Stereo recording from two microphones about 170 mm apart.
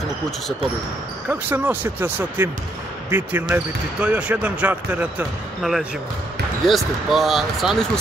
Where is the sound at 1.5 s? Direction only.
10° right (ahead or behind).